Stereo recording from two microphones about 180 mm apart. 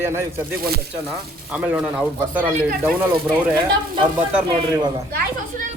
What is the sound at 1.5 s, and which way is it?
Speech, 5° right (ahead or behind).